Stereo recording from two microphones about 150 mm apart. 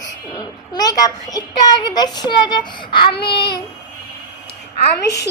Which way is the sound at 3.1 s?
35° left (ahead or behind).